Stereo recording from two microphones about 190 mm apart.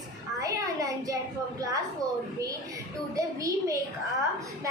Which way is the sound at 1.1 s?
20° right (ahead or behind).